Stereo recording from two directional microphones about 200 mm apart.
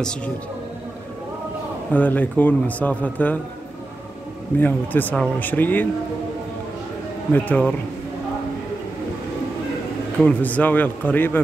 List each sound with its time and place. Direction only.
1.9 s a man's voice: 10° left (ahead or behind)
4.6 s a man's voice: 10° left (ahead or behind)
7.3 s a man's voice: 10° left (ahead or behind)
10.2 s a man's voice: 10° left (ahead or behind)